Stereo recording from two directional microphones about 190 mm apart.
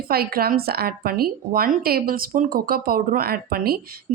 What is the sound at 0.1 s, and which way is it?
Speech, 55° right (ahead or behind).